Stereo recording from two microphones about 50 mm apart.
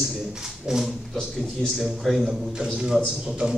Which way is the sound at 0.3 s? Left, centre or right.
Centre.